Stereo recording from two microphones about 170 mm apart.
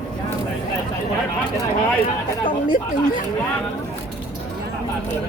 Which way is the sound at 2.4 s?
25° left (ahead or behind).